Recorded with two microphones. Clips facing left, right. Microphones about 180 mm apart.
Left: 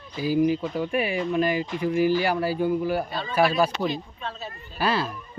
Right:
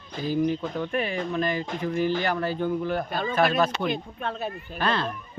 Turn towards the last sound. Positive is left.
turn(degrees=5)  # may be behind; listen again after turning